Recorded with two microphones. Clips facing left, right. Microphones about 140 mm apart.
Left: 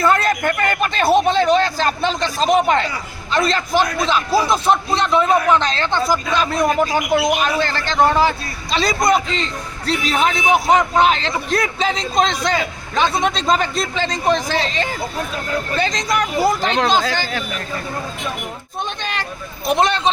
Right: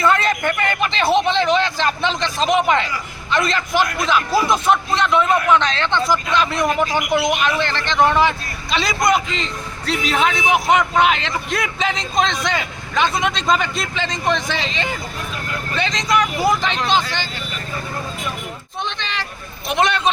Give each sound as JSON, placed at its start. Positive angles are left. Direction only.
{"t": 0.0, "sound": "a sound", "side_deg": 40}
{"t": 1.3, "sound": "a man's voice", "side_deg": 40}
{"t": 18.9, "sound": "speech", "side_deg": 50}
{"t": 19.6, "sound": "a man's voice", "side_deg": 35}